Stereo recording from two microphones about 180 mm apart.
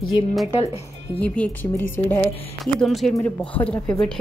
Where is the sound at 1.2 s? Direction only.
10° left (ahead or behind).